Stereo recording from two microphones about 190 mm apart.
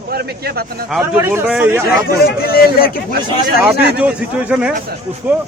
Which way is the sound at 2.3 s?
55° left (ahead or behind).